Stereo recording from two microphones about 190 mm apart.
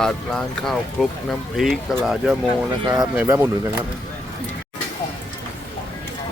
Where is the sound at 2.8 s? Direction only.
20° right (ahead or behind).